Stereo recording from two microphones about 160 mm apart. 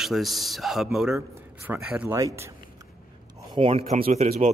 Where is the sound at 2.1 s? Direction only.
20° right (ahead or behind).